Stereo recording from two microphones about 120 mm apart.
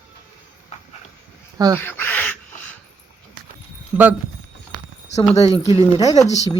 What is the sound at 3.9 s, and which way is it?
Speech, 15° right (ahead or behind).